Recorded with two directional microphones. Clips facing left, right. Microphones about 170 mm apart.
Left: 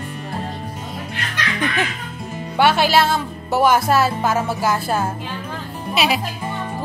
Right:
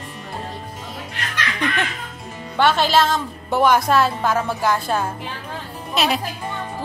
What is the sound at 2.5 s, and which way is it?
Speech, 10° left (ahead or behind).